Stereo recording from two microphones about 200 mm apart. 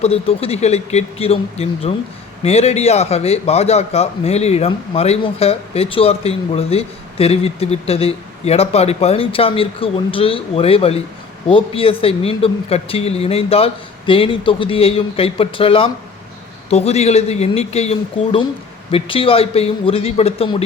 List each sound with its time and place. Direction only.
0.0 s a man's voice: 30° left (ahead or behind)